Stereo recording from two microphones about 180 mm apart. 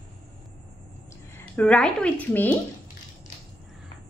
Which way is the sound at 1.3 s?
10° left (ahead or behind).